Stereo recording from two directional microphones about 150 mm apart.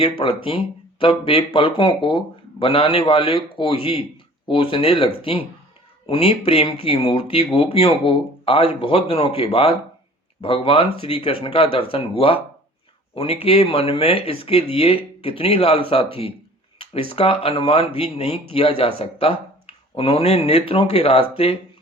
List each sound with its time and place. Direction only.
0.0 s speech: 35° left (ahead or behind)
16.8 s speech: 40° left (ahead or behind)